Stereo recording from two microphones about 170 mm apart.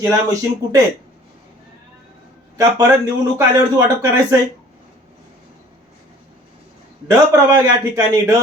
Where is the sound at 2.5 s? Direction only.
20° right (ahead or behind).